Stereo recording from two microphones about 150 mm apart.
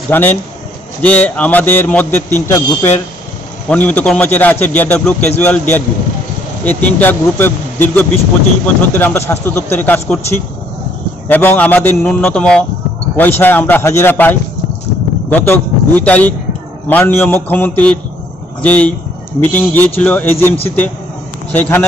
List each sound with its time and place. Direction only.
0.1 s a man's voice: 15° left (ahead or behind)